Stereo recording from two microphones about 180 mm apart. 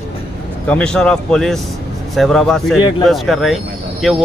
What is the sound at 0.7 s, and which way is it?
Speech, 5° left (ahead or behind).